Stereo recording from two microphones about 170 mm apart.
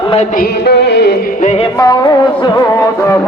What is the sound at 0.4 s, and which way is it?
Music, 70° left (ahead or behind).